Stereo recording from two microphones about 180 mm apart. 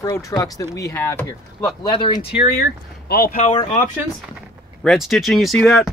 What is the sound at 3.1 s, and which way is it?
Speech, 55° left (ahead or behind).